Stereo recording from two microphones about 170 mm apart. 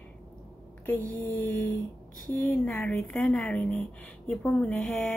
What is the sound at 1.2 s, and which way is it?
A woman's voice, 10° left (ahead or behind).